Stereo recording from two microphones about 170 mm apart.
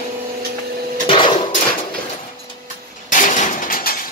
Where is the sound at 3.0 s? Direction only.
50° left (ahead or behind).